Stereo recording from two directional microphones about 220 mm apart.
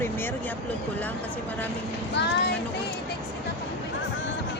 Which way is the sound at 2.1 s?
50° left (ahead or behind).